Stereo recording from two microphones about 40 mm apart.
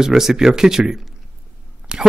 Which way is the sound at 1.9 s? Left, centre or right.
Right.